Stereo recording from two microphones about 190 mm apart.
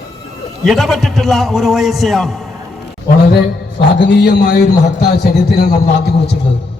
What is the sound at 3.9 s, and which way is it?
Speech, 65° left (ahead or behind).